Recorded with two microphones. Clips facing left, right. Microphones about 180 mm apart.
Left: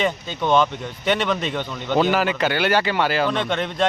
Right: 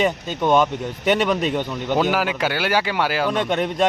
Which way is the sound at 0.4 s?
15° right (ahead or behind).